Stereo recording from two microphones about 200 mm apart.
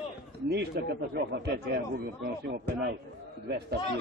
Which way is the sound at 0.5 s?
50° right (ahead or behind).